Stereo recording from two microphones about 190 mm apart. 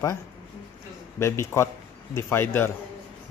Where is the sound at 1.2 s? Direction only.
15° left (ahead or behind).